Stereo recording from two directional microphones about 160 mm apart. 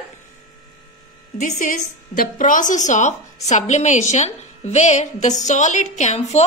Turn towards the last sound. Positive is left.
turn(degrees=45)  # may be behind; listen again after turning